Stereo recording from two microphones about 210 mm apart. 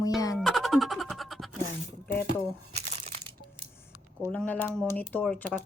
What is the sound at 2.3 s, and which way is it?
Crumpling, 30° right (ahead or behind).